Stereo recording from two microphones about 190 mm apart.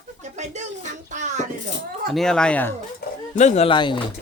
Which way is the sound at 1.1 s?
40° right (ahead or behind).